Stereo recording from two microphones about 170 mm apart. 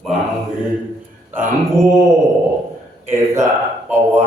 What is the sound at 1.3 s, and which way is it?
Mantra, 15° right (ahead or behind).